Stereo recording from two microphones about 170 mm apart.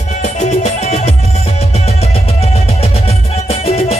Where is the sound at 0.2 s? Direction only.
40° left (ahead or behind).